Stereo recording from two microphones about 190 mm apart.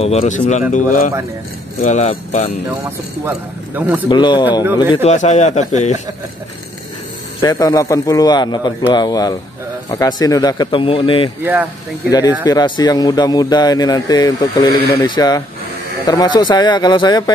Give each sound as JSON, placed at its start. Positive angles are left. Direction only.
{"t": 0.0, "sound": "speech", "side_deg": 35}
{"t": 3.3, "sound": "speech", "side_deg": -10}
{"t": 4.1, "sound": "speech", "side_deg": 25}
{"t": 5.0, "sound": "speech", "side_deg": 40}
{"t": 7.4, "sound": "speech", "side_deg": 20}
{"t": 14.7, "sound": "speech", "side_deg": 55}
{"t": 15.0, "sound": "speech", "side_deg": 20}